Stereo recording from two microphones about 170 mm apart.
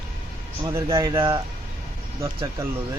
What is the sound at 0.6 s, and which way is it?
Speech, 20° right (ahead or behind).